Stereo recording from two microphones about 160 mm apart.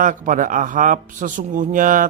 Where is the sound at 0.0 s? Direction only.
55° right (ahead or behind).